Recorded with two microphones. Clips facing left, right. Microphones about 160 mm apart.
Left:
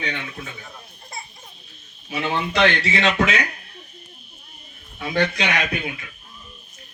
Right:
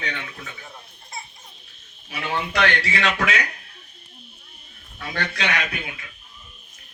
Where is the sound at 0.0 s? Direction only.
10° left (ahead or behind).